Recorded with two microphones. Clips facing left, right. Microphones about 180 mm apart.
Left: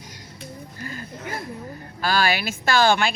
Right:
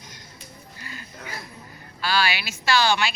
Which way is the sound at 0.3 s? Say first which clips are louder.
Left 11 dB; 50° left (ahead or behind).